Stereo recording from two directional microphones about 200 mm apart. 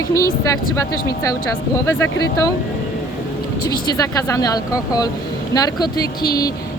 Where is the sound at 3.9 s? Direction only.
15° left (ahead or behind).